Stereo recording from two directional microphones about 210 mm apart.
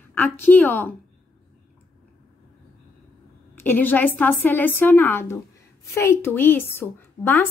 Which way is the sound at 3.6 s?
10° left (ahead or behind).